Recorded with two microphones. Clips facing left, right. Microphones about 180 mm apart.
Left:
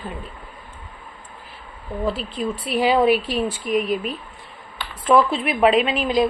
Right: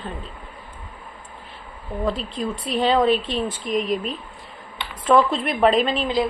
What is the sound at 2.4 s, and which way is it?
A woman's voice, 5° left (ahead or behind).